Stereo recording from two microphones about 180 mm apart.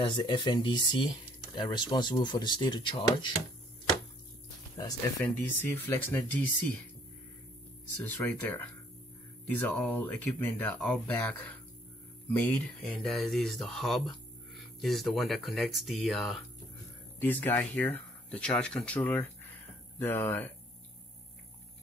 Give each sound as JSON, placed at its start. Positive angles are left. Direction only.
{"t": 0.0, "sound": "speech", "side_deg": 25}
{"t": 5.2, "sound": "speech", "side_deg": 10}
{"t": 8.0, "sound": "speech", "side_deg": 10}